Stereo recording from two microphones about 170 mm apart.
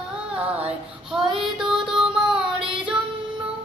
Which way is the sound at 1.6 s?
5° right (ahead or behind).